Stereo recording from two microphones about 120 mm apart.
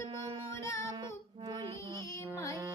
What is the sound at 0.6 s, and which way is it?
Child singing, 25° left (ahead or behind).